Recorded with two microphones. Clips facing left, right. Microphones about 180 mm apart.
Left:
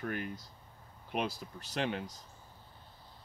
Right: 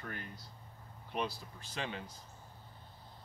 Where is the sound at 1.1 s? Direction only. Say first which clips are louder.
Left 3 dB; 80° left.